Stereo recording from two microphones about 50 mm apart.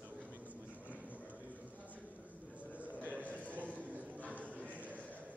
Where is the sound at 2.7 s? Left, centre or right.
Right.